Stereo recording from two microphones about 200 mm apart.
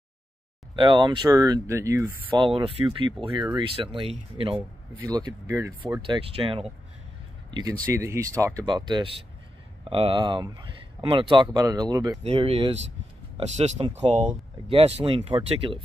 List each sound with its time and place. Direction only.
0.7 s speech: 25° right (ahead or behind)
2.3 s speech: 25° right (ahead or behind)
12.2 s speech: 30° right (ahead or behind)